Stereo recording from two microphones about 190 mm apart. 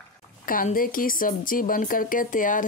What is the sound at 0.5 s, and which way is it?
A woman's voice, 45° left (ahead or behind).